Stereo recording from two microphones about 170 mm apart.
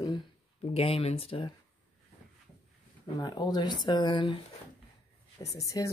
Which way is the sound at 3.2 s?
25° left (ahead or behind).